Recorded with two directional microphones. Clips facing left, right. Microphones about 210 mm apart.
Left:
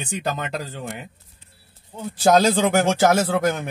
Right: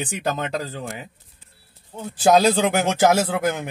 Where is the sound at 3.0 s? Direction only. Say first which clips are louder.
Even; 15° right (ahead or behind).